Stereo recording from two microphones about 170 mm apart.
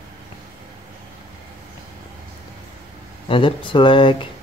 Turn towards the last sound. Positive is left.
turn(degrees=30)  # may be behind; listen again after turning